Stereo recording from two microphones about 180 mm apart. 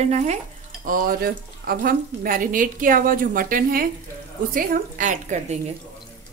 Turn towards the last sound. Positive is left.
turn(degrees=-45)  # may be behind; listen again after turning